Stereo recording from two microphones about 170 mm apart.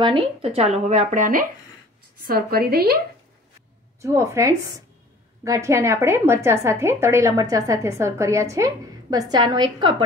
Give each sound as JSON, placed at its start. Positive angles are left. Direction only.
{"t": 0.0, "sound": "speech", "side_deg": -30}
{"t": 2.2, "sound": "a woman's voice", "side_deg": -60}
{"t": 4.0, "sound": "a woman's voice", "side_deg": -15}